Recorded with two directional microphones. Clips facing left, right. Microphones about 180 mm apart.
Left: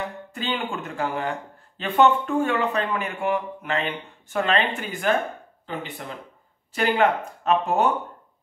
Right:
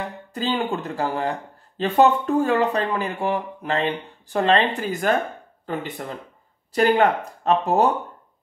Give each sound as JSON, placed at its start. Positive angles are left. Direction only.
{"t": 0.3, "sound": "speech", "side_deg": -35}